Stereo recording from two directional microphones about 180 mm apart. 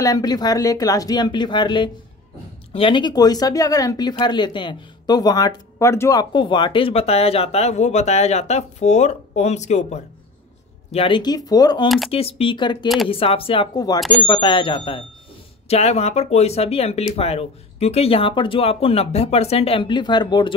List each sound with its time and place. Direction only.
0.0 s speech: 20° left (ahead or behind)
12.1 s speech: 30° left (ahead or behind)